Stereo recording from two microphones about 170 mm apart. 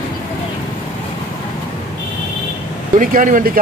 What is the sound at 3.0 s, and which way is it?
Speech, 55° right (ahead or behind).